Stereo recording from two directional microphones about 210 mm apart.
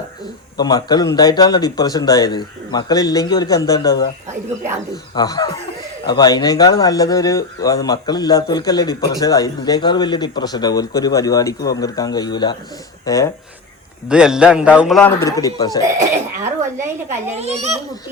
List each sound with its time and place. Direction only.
0.6 s speech: 20° left (ahead or behind)
5.1 s speech: 20° left (ahead or behind)
14.1 s a man's voice: 5° right (ahead or behind)
15.2 s speech: 15° left (ahead or behind)
16.0 s a sound: 15° right (ahead or behind)
17.3 s a child's voice: 30° right (ahead or behind)